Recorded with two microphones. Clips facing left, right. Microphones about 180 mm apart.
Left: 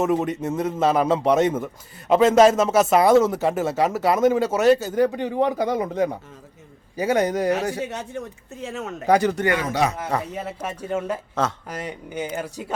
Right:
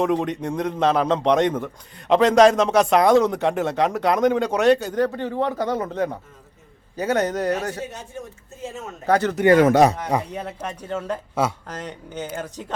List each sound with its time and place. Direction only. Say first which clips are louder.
0.0 s a man's voice: even; 5° left (ahead or behind)
8.6 s speech: left 3 dB; 75° left (ahead or behind)
9.0 s speech: left 1 dB; 10° left (ahead or behind)
9.7 s speech: right 7 dB; 40° right (ahead or behind)
10.3 s speech: even; 5° left (ahead or behind)